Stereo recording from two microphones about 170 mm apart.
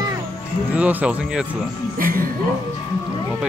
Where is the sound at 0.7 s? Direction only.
10° right (ahead or behind).